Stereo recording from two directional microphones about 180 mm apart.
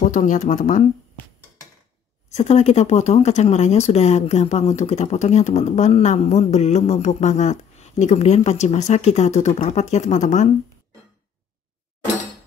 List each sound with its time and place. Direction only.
0.0 s speech: 45° left (ahead or behind)
2.3 s speech: 40° left (ahead or behind)